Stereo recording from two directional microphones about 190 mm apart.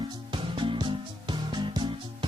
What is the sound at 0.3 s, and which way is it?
Music, 25° right (ahead or behind).